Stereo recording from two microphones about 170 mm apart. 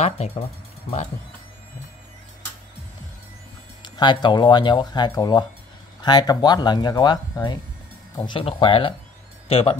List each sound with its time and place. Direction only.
3.8 s speech: 25° left (ahead or behind)